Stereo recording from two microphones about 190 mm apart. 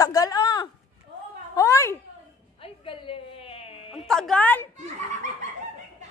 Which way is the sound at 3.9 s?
Centre (ahead or behind).